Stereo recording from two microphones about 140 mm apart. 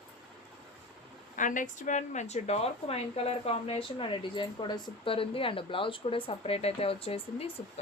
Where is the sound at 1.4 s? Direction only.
65° left (ahead or behind).